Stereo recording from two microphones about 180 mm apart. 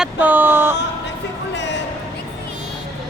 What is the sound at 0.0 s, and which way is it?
Speech, 10° right (ahead or behind).